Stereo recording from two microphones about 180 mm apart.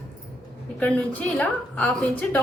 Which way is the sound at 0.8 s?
5° left (ahead or behind).